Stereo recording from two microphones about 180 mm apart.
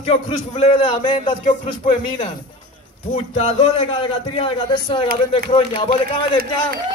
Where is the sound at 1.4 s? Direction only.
40° left (ahead or behind).